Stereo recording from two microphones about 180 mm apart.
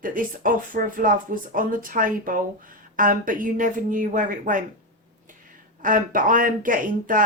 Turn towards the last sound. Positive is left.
turn(degrees=-50)  # may be behind; listen again after turning